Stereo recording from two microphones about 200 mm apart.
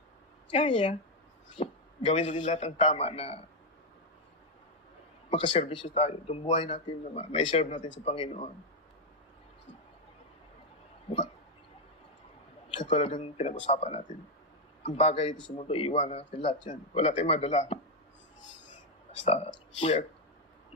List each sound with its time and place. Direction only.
0.5 s speech: 30° left (ahead or behind)
5.3 s speech: 30° left (ahead or behind)
12.8 s speech: 35° left (ahead or behind)
19.2 s speech: 30° left (ahead or behind)